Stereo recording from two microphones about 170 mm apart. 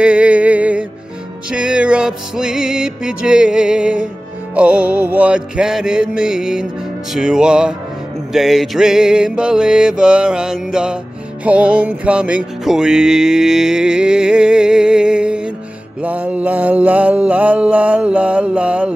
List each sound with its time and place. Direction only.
0.0 s music: 5° right (ahead or behind)
4.6 s mantra: 10° right (ahead or behind)
7.2 s music: 5° right (ahead or behind)
16.0 s mantra: 10° right (ahead or behind)